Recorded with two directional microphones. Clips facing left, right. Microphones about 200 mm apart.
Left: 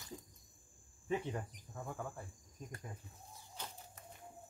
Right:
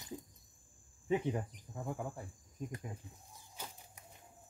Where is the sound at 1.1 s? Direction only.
15° right (ahead or behind).